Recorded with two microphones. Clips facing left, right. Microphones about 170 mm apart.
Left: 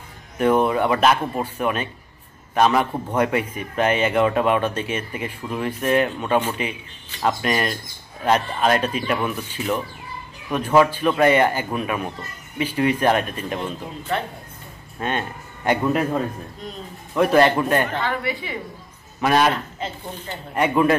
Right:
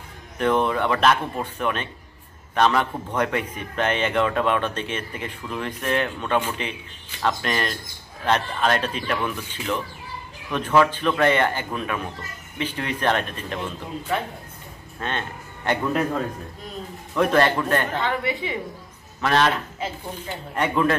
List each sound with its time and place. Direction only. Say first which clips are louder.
0.4 s a man's voice: left 3 dB; 10° left (ahead or behind)
15.0 s speech: left 4 dB; 10° left (ahead or behind)
17.2 s a man's voice: left 3 dB; 10° left (ahead or behind)
18.0 s a woman's voice: even; 20° right (ahead or behind)
19.2 s a man's voice: left 2 dB; 10° left (ahead or behind)
19.8 s speech: even; 10° right (ahead or behind)
20.5 s a man's voice: left 3 dB; 10° left (ahead or behind)